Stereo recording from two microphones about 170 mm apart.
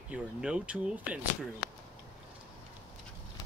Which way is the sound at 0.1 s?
5° right (ahead or behind).